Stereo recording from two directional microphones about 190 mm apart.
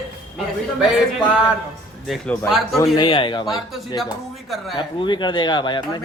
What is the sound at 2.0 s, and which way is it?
Speech, 5° left (ahead or behind).